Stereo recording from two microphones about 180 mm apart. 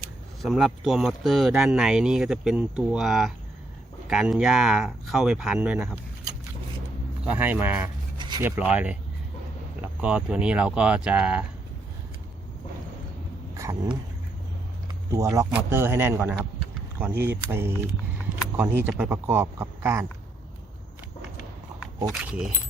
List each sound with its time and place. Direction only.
0.4 s speech: centre (ahead or behind)
7.3 s speech: 10° right (ahead or behind)
8.2 s a sound: 25° right (ahead or behind)
8.4 s speech: 10° right (ahead or behind)
13.5 s a sound: 15° right (ahead or behind)
15.1 s speech: 15° right (ahead or behind)